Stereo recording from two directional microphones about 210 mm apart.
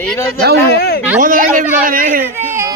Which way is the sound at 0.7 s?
50° left (ahead or behind).